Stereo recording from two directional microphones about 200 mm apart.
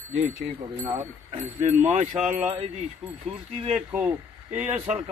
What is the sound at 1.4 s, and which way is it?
A man's voice, 35° right (ahead or behind).